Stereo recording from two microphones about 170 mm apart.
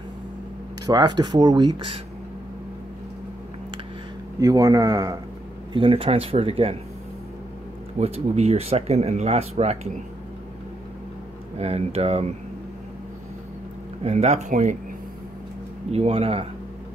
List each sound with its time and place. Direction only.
0.8 s speech: 25° right (ahead or behind)
4.4 s speech: 20° right (ahead or behind)
5.7 s speech: 30° right (ahead or behind)
8.0 s speech: 35° right (ahead or behind)
11.5 s speech: 35° right (ahead or behind)
14.0 s speech: 40° right (ahead or behind)
15.9 s speech: 35° right (ahead or behind)